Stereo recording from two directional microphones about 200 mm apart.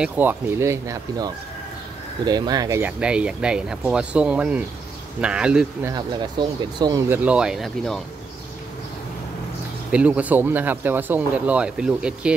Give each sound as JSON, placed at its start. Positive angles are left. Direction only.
{"t": 0.0, "sound": "speech", "side_deg": -10}
{"t": 5.9, "sound": "speech", "side_deg": -20}
{"t": 7.2, "sound": "speech", "side_deg": -5}
{"t": 9.8, "sound": "speech", "side_deg": -5}